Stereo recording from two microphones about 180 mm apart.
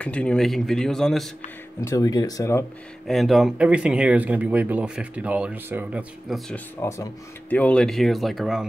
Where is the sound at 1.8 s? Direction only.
20° left (ahead or behind).